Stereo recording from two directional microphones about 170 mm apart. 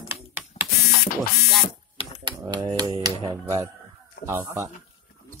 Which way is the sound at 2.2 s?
25° right (ahead or behind).